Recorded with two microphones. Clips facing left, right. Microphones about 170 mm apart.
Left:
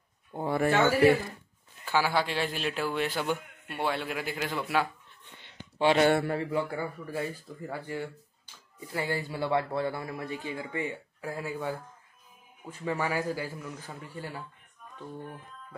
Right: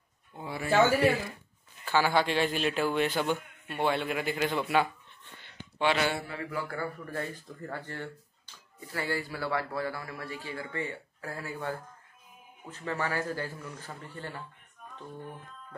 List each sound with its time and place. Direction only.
0.3 s speech: 55° left (ahead or behind)
1.9 s a man's voice: 5° left (ahead or behind)
5.8 s speech: 40° left (ahead or behind)
6.4 s a man's voice: 20° left (ahead or behind)
7.1 s a man's voice: 10° left (ahead or behind)